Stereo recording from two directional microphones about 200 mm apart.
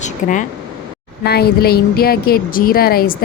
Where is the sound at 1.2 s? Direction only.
50° left (ahead or behind).